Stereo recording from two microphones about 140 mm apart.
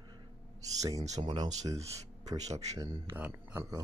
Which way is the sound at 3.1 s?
10° right (ahead or behind).